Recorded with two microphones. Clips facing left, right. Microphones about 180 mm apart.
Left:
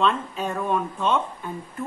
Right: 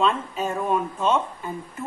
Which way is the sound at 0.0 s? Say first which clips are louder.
Even; 5° right (ahead or behind).